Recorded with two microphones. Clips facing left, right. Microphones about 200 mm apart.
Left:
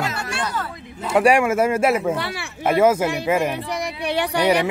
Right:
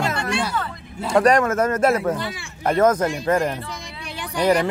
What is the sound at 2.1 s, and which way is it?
Speech, 70° left (ahead or behind).